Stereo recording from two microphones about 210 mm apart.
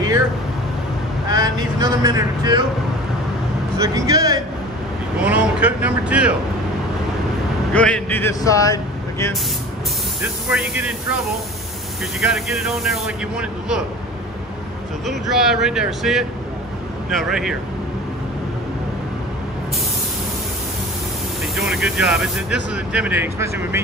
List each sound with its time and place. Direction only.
1.3 s speech: 15° right (ahead or behind)
3.7 s speech: 15° right (ahead or behind)
5.2 s speech: 5° right (ahead or behind)
7.7 s speech: 5° left (ahead or behind)
10.2 s speech: 5° right (ahead or behind)
12.2 s speech: centre (ahead or behind)
15.0 s speech: centre (ahead or behind)
21.5 s speech: centre (ahead or behind)